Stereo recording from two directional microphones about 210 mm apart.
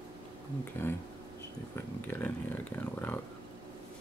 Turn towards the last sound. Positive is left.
turn(degrees=10)  # may be behind; listen again after turning